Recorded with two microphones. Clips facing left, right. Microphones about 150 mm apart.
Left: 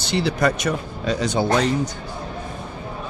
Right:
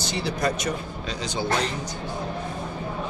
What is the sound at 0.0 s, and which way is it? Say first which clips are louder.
Speech: left 5 dB; 70° left (ahead or behind).